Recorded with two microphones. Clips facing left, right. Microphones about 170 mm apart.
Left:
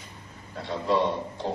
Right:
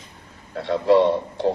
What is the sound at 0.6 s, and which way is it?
Speech, 65° right (ahead or behind).